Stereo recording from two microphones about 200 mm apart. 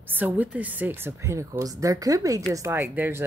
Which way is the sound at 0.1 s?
10° right (ahead or behind).